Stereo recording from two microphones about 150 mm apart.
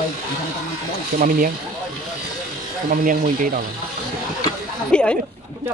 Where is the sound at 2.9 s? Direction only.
65° right (ahead or behind).